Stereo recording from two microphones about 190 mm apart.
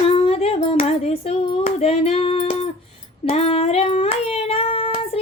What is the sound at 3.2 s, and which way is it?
Child singing, 30° left (ahead or behind).